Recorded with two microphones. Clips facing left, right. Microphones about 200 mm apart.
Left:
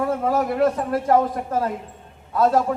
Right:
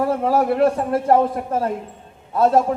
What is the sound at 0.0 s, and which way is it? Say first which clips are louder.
A man's voice: right 3 dB; 30° right (ahead or behind).